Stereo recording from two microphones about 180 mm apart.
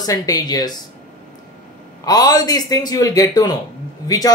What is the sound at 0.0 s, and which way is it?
Speech, 20° left (ahead or behind).